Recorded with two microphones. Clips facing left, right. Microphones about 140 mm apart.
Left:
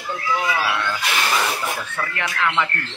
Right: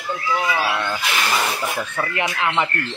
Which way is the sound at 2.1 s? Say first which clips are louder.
Right 1 dB; 20° right (ahead or behind).